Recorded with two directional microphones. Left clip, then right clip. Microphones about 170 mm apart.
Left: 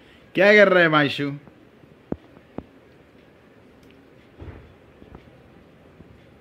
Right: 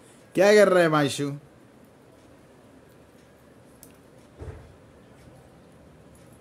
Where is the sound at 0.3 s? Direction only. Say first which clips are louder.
Left 3 dB; 10° right (ahead or behind).